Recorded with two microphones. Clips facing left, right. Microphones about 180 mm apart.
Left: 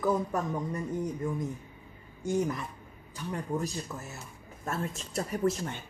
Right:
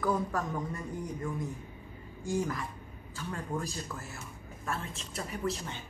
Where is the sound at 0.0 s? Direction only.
20° left (ahead or behind).